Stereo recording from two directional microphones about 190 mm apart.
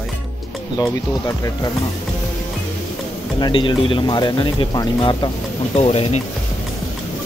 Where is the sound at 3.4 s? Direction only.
25° left (ahead or behind).